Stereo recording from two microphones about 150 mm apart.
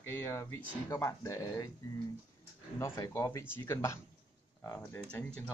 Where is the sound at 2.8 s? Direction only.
15° left (ahead or behind).